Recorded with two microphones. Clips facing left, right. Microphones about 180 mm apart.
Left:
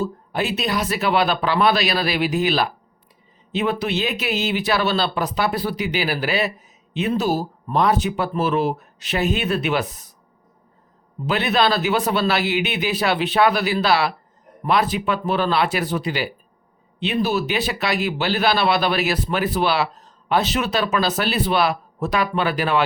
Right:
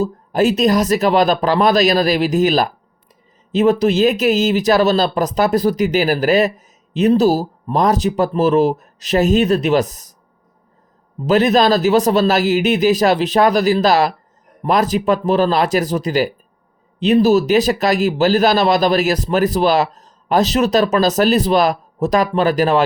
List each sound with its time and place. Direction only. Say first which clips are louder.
0.0 s speech: right 8 dB; 40° right (ahead or behind)
11.3 s speech: right 7 dB; 40° right (ahead or behind)